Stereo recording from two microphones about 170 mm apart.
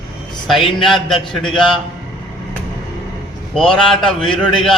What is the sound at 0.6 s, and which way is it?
Speech, 30° left (ahead or behind).